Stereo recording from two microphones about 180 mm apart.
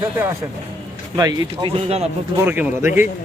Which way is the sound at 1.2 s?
20° right (ahead or behind).